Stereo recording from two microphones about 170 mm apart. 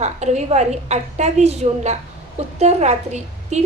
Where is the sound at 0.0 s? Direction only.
40° right (ahead or behind).